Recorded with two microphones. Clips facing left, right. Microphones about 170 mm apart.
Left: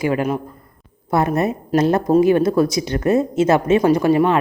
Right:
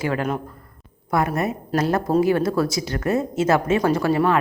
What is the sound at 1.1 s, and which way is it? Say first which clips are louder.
A man's voice: left 4 dB; 25° left (ahead or behind).